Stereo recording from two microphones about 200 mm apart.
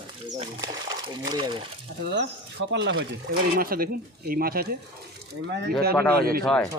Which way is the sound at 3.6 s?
45° right (ahead or behind).